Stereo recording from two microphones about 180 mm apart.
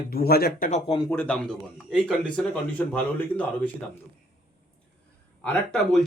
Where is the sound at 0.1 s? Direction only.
60° left (ahead or behind).